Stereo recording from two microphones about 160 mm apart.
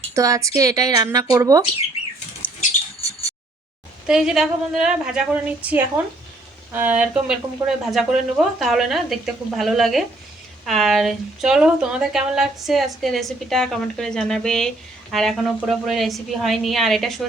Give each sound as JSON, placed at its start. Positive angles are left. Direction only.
{"t": 0.1, "sound": "speech", "side_deg": -20}
{"t": 2.4, "sound": "rodents", "side_deg": 10}
{"t": 4.0, "sound": "a woman's voice", "side_deg": -5}